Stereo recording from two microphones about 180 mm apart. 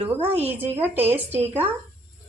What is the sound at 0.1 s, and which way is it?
Speech, 10° right (ahead or behind).